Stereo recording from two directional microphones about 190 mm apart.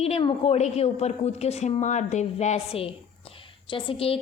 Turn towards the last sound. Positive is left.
turn(degrees=30)  # may be behind; listen again after turning